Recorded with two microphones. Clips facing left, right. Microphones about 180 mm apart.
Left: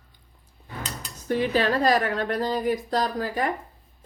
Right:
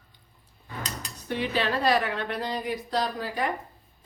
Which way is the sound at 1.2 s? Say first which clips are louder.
Left 5 dB; 45° left (ahead or behind).